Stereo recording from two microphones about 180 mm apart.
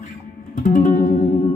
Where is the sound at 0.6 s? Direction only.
45° left (ahead or behind).